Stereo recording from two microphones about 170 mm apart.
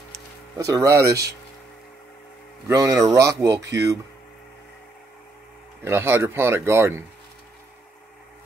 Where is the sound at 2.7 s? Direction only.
20° right (ahead or behind).